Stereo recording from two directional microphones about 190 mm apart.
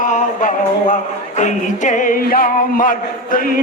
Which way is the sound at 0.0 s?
40° left (ahead or behind).